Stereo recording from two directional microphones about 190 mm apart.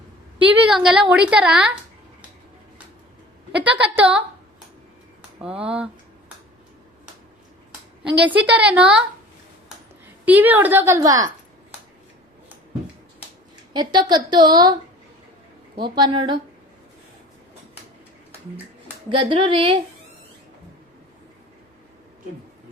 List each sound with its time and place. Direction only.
0.5 s a woman's voice: 5° right (ahead or behind)
3.6 s a woman's voice: 5° right (ahead or behind)
5.6 s a sound: 5° right (ahead or behind)
8.2 s a woman's voice: 10° right (ahead or behind)
10.2 s a woman's voice: 10° right (ahead or behind)
13.7 s a woman's voice: 25° right (ahead or behind)
16.0 s a woman's voice: 25° right (ahead or behind)
19.0 s a woman's voice: 25° right (ahead or behind)